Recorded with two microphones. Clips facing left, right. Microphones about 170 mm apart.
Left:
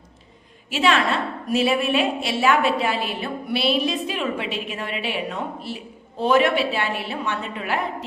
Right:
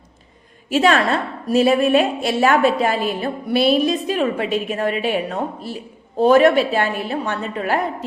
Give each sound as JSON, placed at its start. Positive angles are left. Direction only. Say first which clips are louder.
{"t": 0.7, "sound": "a woman's voice", "louder": "right 4 dB", "side_deg": -45}